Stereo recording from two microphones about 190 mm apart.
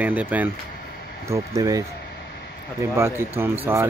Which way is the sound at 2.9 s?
15° right (ahead or behind).